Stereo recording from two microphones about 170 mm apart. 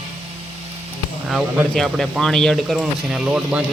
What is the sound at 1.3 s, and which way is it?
Speech, centre (ahead or behind).